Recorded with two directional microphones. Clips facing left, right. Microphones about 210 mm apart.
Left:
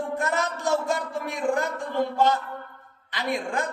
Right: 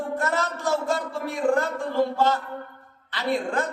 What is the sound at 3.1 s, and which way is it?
Speech, 15° left (ahead or behind).